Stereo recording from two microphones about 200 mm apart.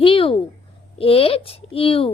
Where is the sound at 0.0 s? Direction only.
25° left (ahead or behind).